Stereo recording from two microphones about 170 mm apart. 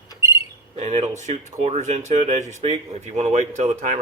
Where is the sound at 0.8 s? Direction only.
40° right (ahead or behind).